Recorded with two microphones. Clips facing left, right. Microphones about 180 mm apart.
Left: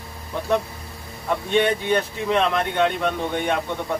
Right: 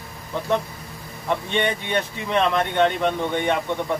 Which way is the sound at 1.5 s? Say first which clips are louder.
Left 6 dB; 5° left (ahead or behind).